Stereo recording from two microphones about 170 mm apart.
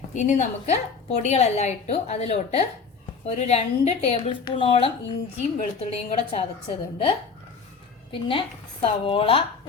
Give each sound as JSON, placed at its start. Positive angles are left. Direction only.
{"t": 0.1, "sound": "a woman's voice", "side_deg": 45}
{"t": 8.1, "sound": "a woman's voice", "side_deg": 30}